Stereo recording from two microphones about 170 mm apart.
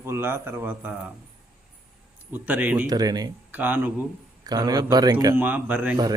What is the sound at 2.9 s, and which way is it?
Speech, 25° right (ahead or behind).